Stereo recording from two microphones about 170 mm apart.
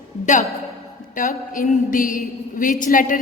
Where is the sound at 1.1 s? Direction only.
50° left (ahead or behind).